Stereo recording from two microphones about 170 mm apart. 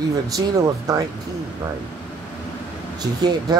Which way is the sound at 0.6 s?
20° right (ahead or behind).